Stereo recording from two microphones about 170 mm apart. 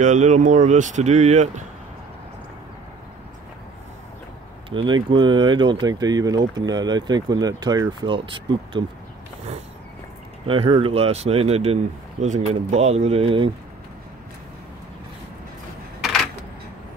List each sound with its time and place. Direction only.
0.0 s speech: 45° right (ahead or behind)
4.6 s speech: 30° right (ahead or behind)
10.4 s speech: 30° right (ahead or behind)